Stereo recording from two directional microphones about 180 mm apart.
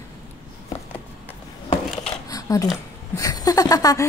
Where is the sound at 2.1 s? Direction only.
20° left (ahead or behind).